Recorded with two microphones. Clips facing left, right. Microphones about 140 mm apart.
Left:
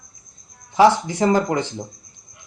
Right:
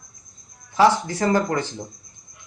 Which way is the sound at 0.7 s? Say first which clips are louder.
Left 3 dB; 20° left (ahead or behind).